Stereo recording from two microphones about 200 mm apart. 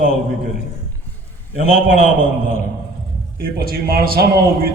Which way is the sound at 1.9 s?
35° left (ahead or behind).